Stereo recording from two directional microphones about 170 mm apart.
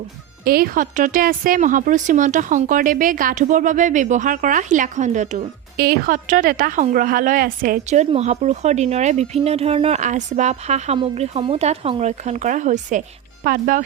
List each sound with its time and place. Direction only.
0.4 s a woman's voice: 60° right (ahead or behind); by 5.5 s 45° right (ahead or behind)
5.7 s a woman's voice: 65° right (ahead or behind)